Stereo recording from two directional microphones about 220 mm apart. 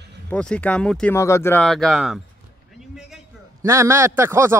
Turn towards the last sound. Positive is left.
turn(degrees=-10)  # may be behind; listen again after turning